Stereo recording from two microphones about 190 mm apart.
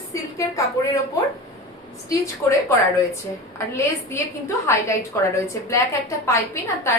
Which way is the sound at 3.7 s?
15° left (ahead or behind).